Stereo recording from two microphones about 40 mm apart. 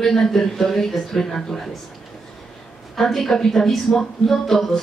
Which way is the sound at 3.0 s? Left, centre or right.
Centre.